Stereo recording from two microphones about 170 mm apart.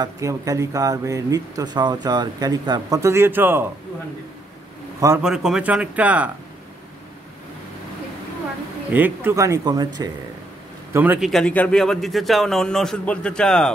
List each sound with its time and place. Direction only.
0.0 s speech: 20° right (ahead or behind)
5.2 s speech: 5° right (ahead or behind)
8.9 s speech: 10° right (ahead or behind)
10.9 s a man's voice: 10° right (ahead or behind)
11.2 s a man's voice: 5° left (ahead or behind)